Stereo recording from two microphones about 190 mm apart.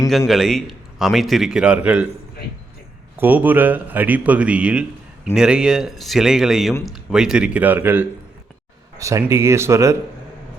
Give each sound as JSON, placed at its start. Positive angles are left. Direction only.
{"t": 0.3, "sound": "a man's voice", "side_deg": 0}
{"t": 3.2, "sound": "a man's voice", "side_deg": -10}